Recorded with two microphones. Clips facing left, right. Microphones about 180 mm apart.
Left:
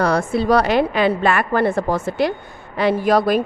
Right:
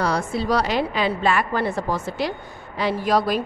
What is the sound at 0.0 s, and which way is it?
A woman's voice, 55° left (ahead or behind).